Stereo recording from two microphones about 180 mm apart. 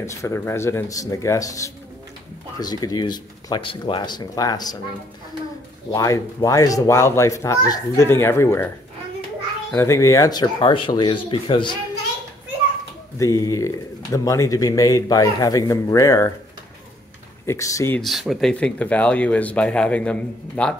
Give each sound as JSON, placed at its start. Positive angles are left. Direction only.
{"t": 0.0, "sound": "speech", "side_deg": 15}
{"t": 5.9, "sound": "speech", "side_deg": 20}
{"t": 13.2, "sound": "speech", "side_deg": 20}
{"t": 17.5, "sound": "speech", "side_deg": 15}
{"t": 18.0, "sound": "speech", "side_deg": 0}